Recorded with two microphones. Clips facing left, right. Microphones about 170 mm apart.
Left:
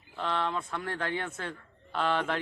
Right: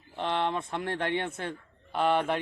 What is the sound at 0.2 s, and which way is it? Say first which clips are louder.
A man's voice: right 2 dB; 20° right (ahead or behind).